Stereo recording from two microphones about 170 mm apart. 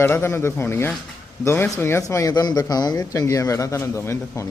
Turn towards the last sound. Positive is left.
turn(degrees=15)  # may be behind; listen again after turning